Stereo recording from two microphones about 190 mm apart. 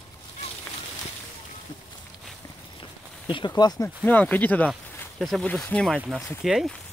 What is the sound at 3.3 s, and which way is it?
Speech, 25° left (ahead or behind).